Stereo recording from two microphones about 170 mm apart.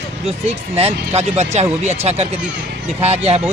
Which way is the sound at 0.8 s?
35° right (ahead or behind).